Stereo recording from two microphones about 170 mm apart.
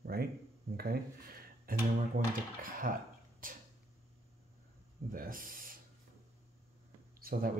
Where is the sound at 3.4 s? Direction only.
55° right (ahead or behind).